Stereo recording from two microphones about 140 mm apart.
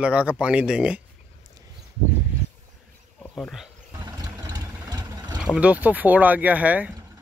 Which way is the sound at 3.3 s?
10° left (ahead or behind).